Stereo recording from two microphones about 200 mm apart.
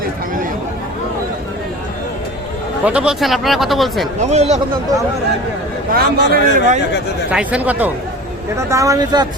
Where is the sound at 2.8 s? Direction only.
5° right (ahead or behind).